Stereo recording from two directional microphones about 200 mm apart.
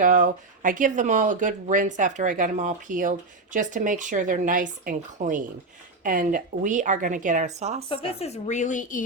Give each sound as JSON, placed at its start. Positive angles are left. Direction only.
{"t": 0.0, "sound": "speech", "side_deg": -40}
{"t": 7.9, "sound": "a woman's voice", "side_deg": 30}